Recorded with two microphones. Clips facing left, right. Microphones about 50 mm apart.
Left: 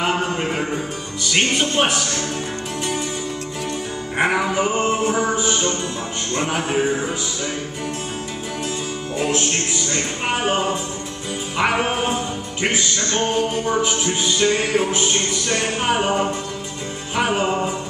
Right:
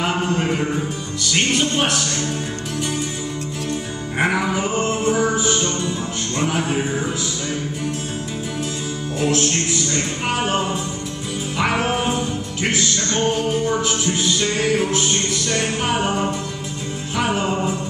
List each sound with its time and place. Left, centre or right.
0.0 s music: centre
4.2 s music: centre
10.2 s music: centre